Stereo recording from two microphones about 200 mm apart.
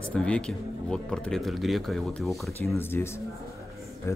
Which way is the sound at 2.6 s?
10° left (ahead or behind).